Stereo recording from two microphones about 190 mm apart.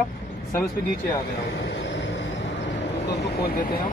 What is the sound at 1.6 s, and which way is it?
Vehicle, 65° left (ahead or behind).